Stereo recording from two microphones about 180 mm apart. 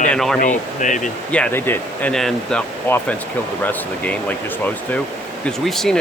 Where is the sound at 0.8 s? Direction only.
45° left (ahead or behind).